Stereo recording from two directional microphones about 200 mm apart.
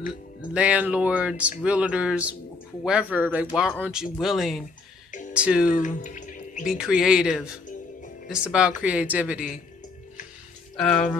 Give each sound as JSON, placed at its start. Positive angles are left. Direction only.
{"t": 0.5, "sound": "speech", "side_deg": -5}
{"t": 5.7, "sound": "speech", "side_deg": 40}
{"t": 6.7, "sound": "speech", "side_deg": -5}
{"t": 10.8, "sound": "speech", "side_deg": 5}